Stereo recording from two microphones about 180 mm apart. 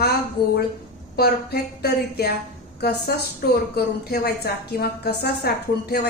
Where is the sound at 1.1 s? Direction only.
60° left (ahead or behind).